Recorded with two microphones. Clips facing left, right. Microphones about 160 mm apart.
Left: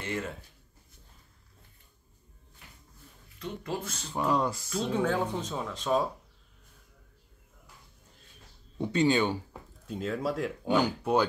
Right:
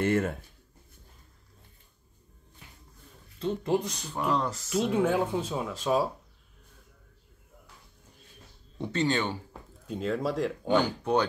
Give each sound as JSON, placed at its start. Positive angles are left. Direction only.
{"t": 0.0, "sound": "speech", "side_deg": -50}
{"t": 3.3, "sound": "speech", "side_deg": -30}
{"t": 3.8, "sound": "speech", "side_deg": -15}
{"t": 4.3, "sound": "speech", "side_deg": 10}
{"t": 4.6, "sound": "speech", "side_deg": -10}
{"t": 8.7, "sound": "speech", "side_deg": 10}
{"t": 9.8, "sound": "speech", "side_deg": 0}